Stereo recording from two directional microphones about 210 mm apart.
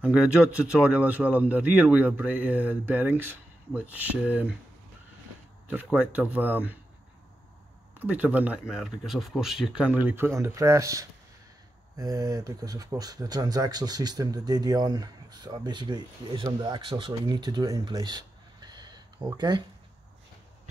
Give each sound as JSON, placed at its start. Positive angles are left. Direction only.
{"t": 0.0, "sound": "speech", "side_deg": -5}
{"t": 5.7, "sound": "speech", "side_deg": -5}
{"t": 8.0, "sound": "speech", "side_deg": -5}